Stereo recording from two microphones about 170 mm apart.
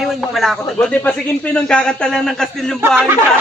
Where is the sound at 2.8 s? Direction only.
10° right (ahead or behind).